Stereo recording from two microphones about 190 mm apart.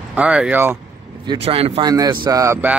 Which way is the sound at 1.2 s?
25° right (ahead or behind).